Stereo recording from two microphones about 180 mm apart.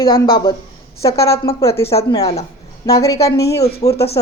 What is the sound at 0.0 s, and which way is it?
Speech, 25° left (ahead or behind).